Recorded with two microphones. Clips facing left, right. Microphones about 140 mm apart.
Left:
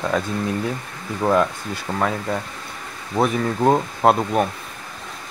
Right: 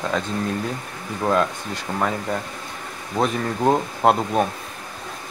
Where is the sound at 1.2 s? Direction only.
10° left (ahead or behind).